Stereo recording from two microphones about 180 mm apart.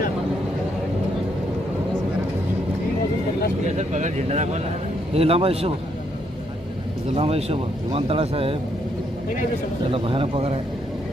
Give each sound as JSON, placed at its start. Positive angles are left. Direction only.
{"t": 3.6, "sound": "speech", "side_deg": -40}
{"t": 7.2, "sound": "speech", "side_deg": -35}
{"t": 9.8, "sound": "speech", "side_deg": -30}